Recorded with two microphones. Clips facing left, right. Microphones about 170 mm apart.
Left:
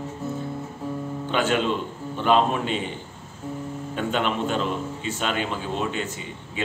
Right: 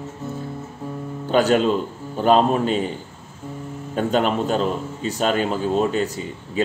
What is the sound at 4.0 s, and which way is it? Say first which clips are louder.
A man's voice: right 5 dB; 40° right (ahead or behind).